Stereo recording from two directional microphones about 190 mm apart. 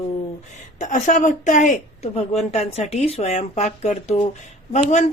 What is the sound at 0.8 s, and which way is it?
A woman's voice, 40° left (ahead or behind).